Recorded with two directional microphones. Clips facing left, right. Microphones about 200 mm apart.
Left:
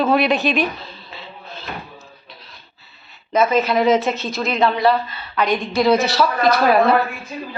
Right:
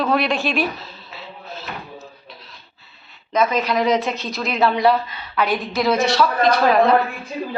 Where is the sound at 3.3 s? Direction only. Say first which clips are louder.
Left 2 dB; 5° left (ahead or behind).